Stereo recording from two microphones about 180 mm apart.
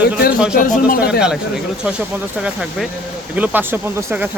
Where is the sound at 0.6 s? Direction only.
50° left (ahead or behind).